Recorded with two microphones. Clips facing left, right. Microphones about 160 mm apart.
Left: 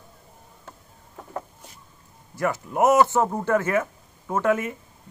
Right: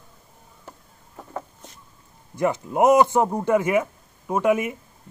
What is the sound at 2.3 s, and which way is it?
Speech, 20° right (ahead or behind).